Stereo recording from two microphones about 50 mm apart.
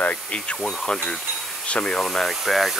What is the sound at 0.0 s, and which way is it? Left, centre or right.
Speech, left.